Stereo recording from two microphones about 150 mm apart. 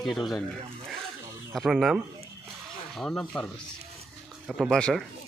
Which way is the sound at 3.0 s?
5° left (ahead or behind).